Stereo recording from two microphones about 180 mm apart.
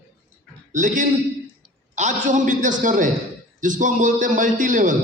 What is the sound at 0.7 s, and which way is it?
A man's voice, 45° right (ahead or behind).